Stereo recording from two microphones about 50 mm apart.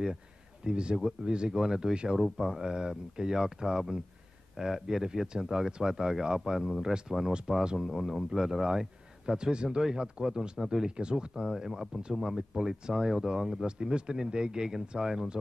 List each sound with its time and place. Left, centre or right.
0.7 s speech: centre
2.1 s speech: centre